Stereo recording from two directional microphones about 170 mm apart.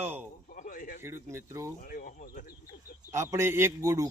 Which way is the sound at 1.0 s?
15° right (ahead or behind).